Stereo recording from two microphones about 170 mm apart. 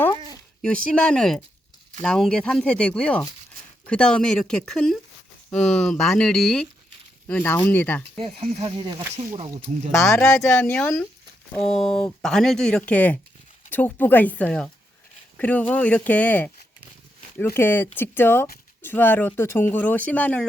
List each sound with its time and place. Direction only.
0.6 s speech: 5° left (ahead or behind)
8.2 s speech: 35° right (ahead or behind)
9.3 s speech: 40° right (ahead or behind)
10.0 s speech: 15° left (ahead or behind)